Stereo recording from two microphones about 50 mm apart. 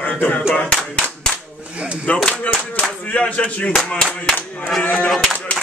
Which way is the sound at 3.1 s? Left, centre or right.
Left.